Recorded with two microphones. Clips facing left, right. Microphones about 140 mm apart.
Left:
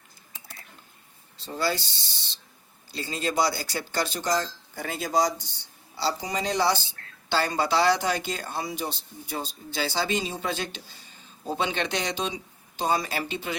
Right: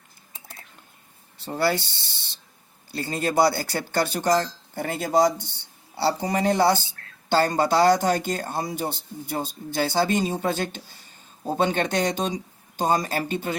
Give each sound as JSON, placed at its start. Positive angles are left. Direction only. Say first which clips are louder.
{"t": 1.4, "sound": "speech", "louder": "right 4 dB", "side_deg": -60}